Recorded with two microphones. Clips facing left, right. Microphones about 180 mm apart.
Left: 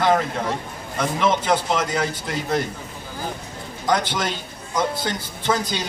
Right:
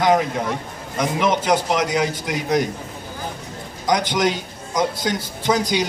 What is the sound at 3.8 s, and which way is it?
A man's voice, 15° right (ahead or behind).